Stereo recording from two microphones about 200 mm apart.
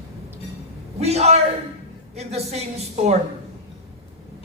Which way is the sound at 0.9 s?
30° right (ahead or behind).